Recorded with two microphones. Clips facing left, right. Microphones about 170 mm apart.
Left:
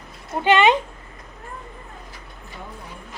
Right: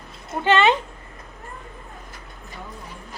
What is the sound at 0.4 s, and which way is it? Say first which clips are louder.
Speech: left 2 dB; 15° left (ahead or behind).